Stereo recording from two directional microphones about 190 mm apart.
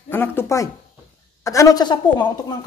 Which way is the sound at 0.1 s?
10° left (ahead or behind).